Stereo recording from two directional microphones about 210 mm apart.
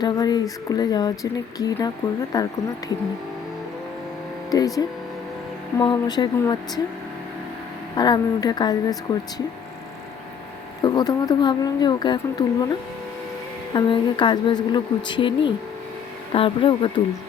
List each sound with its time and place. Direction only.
0.0 s speech: 20° left (ahead or behind)
4.5 s speech: 15° left (ahead or behind)
7.9 s speech: 20° left (ahead or behind)
10.8 s speech: 20° left (ahead or behind)
13.7 s speech: 20° left (ahead or behind)